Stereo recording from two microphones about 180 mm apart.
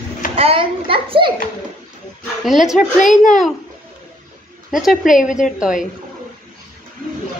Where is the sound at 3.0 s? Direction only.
45° left (ahead or behind).